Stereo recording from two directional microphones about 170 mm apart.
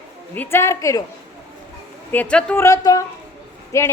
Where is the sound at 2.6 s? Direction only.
20° left (ahead or behind).